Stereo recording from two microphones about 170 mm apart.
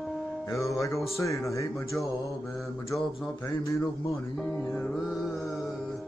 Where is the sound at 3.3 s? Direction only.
15° left (ahead or behind).